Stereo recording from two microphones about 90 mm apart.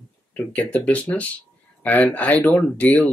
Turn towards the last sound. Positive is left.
turn(degrees=15)  # may be behind; listen again after turning